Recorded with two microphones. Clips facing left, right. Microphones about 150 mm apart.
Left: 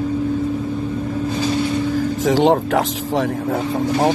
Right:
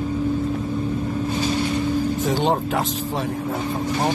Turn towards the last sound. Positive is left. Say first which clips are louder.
# left 5 dB
turn(degrees=90)